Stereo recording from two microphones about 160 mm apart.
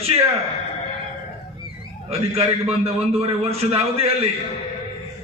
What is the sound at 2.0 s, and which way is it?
A man's voice, 40° right (ahead or behind).